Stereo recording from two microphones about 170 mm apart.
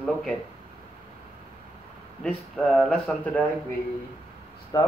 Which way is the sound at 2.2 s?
5° left (ahead or behind).